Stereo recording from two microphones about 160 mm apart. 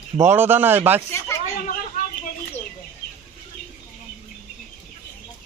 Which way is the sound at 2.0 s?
60° left (ahead or behind).